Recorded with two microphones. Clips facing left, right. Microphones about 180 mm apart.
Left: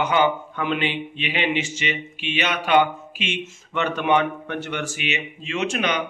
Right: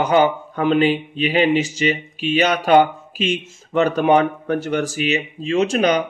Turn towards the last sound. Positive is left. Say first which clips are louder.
# right 7 dB
turn(degrees=-40)  # may be behind; listen again after turning